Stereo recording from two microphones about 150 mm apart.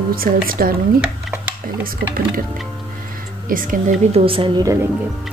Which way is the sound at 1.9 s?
75° right (ahead or behind).